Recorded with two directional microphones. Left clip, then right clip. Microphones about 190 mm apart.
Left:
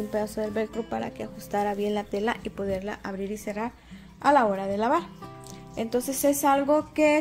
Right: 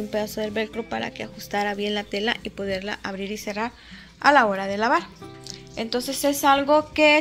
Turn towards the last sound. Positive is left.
turn(degrees=0)  # may be behind; listen again after turning